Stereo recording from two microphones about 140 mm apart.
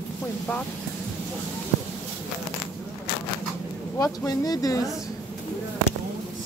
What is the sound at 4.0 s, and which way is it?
Speech, 25° left (ahead or behind).